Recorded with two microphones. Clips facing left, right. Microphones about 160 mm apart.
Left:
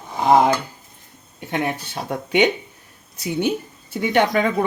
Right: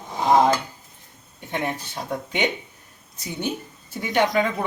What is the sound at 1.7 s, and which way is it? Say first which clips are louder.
A woman's voice: left 2 dB; 65° left (ahead or behind).